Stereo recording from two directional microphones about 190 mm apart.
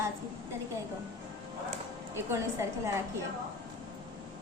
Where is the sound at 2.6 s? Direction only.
15° right (ahead or behind).